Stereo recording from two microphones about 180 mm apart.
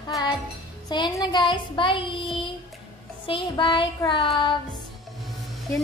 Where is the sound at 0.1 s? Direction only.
20° left (ahead or behind).